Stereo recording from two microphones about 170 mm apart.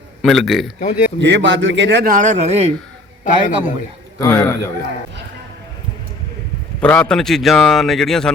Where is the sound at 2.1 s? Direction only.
45° right (ahead or behind).